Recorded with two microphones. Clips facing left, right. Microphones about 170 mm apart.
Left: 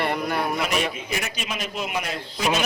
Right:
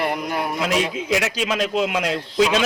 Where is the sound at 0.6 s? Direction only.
90° right.